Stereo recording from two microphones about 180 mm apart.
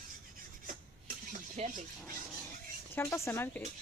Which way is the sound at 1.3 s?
45° right (ahead or behind).